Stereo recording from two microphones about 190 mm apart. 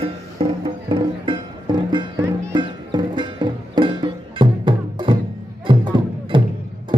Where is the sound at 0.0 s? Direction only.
30° right (ahead or behind).